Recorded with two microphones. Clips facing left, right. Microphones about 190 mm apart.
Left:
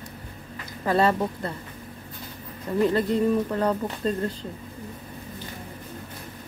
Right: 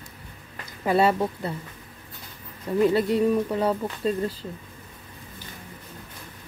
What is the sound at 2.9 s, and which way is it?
Speech, 10° right (ahead or behind).